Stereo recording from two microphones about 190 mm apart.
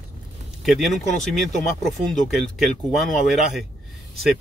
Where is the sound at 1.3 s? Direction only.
Centre (ahead or behind).